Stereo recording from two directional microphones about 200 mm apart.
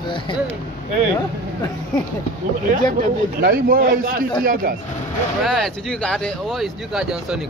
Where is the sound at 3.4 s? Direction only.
50° right (ahead or behind).